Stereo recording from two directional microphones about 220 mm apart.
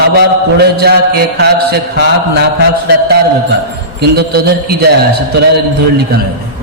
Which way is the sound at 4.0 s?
50° right (ahead or behind).